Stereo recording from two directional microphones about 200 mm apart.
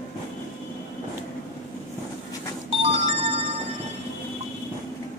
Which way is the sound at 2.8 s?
30° right (ahead or behind).